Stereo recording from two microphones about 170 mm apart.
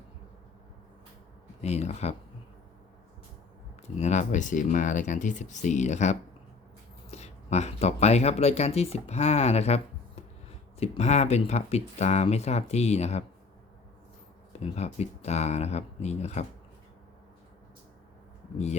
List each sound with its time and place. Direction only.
1.6 s speech: 40° left (ahead or behind)
3.8 s speech: 40° left (ahead or behind)
14.6 s speech: 40° left (ahead or behind)